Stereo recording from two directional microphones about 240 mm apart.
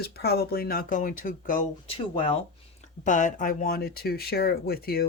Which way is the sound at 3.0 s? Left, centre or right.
Left.